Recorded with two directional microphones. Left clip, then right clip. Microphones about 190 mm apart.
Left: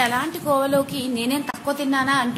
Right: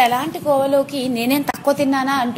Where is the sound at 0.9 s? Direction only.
30° right (ahead or behind).